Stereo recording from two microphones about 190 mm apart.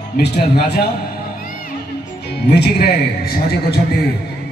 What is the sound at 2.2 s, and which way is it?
A man's voice, 60° left (ahead or behind).